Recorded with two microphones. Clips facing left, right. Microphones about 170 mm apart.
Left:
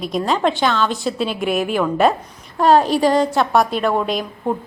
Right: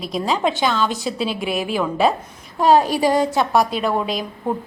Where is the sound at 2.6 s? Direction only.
5° right (ahead or behind).